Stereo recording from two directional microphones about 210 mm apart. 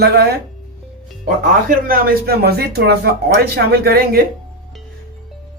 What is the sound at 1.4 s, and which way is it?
Speech, 45° right (ahead or behind).